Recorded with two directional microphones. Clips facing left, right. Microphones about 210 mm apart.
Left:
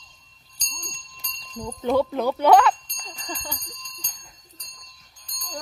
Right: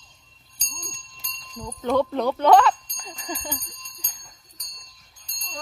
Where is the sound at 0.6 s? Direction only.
5° right (ahead or behind).